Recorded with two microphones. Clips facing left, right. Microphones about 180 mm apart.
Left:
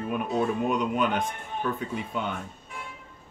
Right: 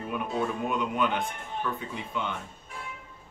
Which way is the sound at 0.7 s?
45° left (ahead or behind).